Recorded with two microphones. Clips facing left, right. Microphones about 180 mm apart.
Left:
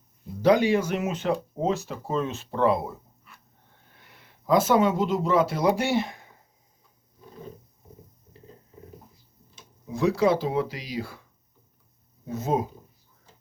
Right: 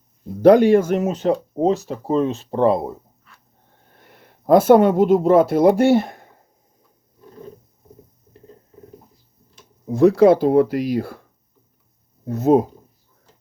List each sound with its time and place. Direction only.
0.4 s speech: 55° right (ahead or behind); by 2.9 s 35° right (ahead or behind)
3.9 s speech: 50° right (ahead or behind)
9.8 s speech: 50° right (ahead or behind)
12.4 s speech: 55° right (ahead or behind)